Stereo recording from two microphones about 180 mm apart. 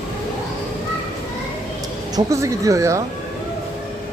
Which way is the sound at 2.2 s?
15° right (ahead or behind).